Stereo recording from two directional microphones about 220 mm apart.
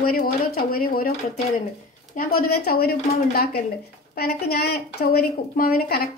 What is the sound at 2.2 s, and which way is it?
Speech, 45° left (ahead or behind).